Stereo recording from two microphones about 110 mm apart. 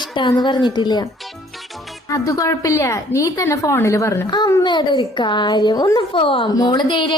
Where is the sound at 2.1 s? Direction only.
30° left (ahead or behind).